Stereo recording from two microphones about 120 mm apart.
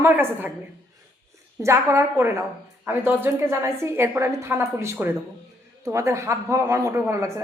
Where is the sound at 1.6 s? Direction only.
25° right (ahead or behind).